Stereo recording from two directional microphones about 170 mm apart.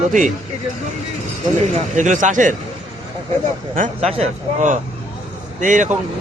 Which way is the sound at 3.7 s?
40° right (ahead or behind).